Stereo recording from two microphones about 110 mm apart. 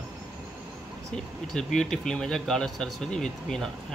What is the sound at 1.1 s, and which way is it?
Speech, 5° left (ahead or behind).